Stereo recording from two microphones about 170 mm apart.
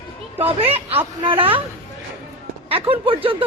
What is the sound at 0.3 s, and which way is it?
Speech, 35° right (ahead or behind).